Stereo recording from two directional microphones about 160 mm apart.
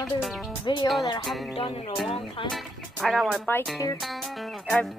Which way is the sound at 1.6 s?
35° left (ahead or behind).